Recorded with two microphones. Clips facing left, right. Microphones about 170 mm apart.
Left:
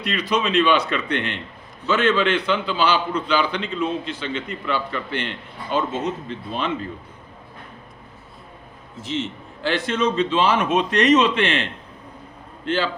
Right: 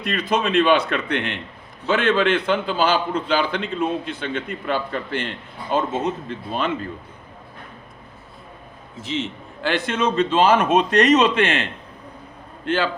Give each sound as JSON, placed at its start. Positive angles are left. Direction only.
{"t": 0.0, "sound": "a man's voice", "side_deg": -50}
{"t": 9.0, "sound": "a man's voice", "side_deg": -60}